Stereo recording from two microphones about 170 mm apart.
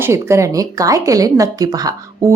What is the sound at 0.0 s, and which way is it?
Speech, 15° right (ahead or behind).